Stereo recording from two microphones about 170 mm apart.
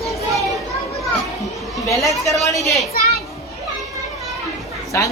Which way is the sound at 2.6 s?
Centre (ahead or behind).